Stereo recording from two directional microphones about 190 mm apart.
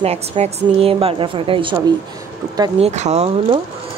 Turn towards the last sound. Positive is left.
turn(degrees=-35)  # may be behind; listen again after turning